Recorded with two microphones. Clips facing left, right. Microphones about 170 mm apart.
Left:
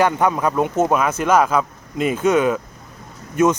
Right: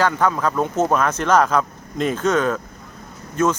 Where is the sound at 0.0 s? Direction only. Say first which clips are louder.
Left 2 dB; 15° left (ahead or behind).